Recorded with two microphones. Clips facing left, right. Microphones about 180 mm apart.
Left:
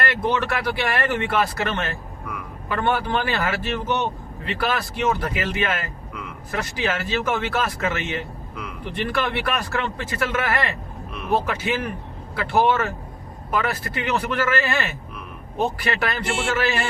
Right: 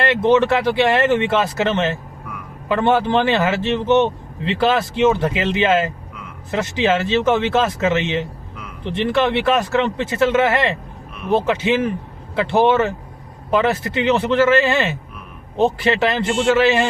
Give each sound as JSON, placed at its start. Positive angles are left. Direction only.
{"t": 0.0, "sound": "speech", "side_deg": -25}
{"t": 13.5, "sound": "speech", "side_deg": -25}